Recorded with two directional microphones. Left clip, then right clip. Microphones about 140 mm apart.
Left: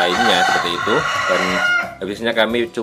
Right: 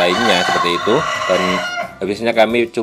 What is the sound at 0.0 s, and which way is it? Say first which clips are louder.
Speech: right 1 dB; 45° right (ahead or behind).